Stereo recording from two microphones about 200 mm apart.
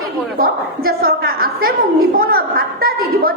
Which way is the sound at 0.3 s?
45° right (ahead or behind).